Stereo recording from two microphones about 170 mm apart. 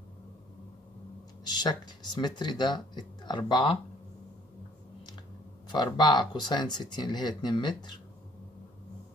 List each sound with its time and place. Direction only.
1.4 s speech: 25° left (ahead or behind)
5.7 s speech: 25° left (ahead or behind)